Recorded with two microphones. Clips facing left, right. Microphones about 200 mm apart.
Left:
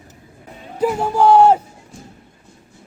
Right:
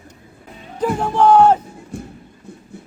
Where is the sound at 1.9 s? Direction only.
60° right (ahead or behind).